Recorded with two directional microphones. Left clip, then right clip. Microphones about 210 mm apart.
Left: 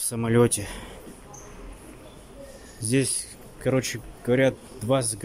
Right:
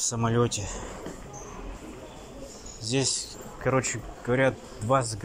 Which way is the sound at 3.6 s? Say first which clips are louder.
Left 1 dB; 25° left (ahead or behind).